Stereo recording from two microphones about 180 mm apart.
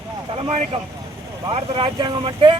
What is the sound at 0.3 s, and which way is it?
Speech, 30° right (ahead or behind).